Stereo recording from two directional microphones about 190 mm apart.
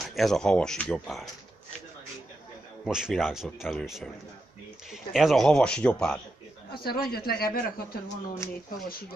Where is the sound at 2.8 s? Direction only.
Centre (ahead or behind).